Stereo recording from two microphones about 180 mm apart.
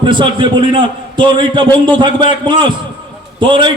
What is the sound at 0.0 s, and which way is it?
A man's voice, 25° right (ahead or behind).